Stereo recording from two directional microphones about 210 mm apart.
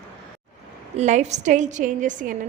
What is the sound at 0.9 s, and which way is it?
A woman's voice, 35° right (ahead or behind).